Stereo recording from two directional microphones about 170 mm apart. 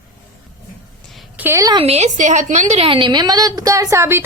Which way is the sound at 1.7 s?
35° right (ahead or behind).